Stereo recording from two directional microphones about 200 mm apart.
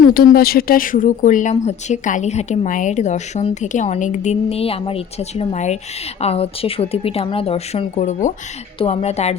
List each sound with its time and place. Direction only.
0.1 s speech: 50° left (ahead or behind); by 9.3 s 30° left (ahead or behind)